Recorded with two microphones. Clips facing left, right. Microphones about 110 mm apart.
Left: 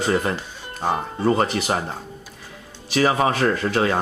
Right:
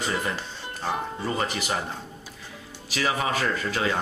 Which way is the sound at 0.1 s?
55° left (ahead or behind).